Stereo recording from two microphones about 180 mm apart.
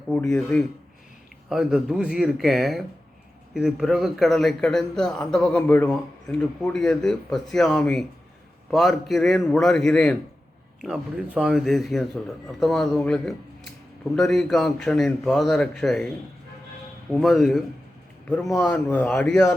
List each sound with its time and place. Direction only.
0.1 s speech: 5° left (ahead or behind)